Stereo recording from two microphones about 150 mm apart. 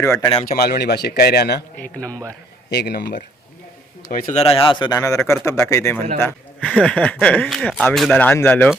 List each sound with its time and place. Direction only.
0.0 s speech: 20° left (ahead or behind)
0.4 s speech: 90° left
1.8 s speech: 10° left (ahead or behind)
2.6 s speech: 90° left
4.3 s speech: 45° left (ahead or behind); by 8.7 s 10° left (ahead or behind)